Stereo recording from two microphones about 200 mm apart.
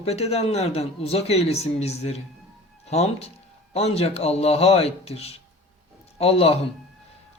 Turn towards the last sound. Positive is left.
turn(degrees=30)  # may be behind; listen again after turning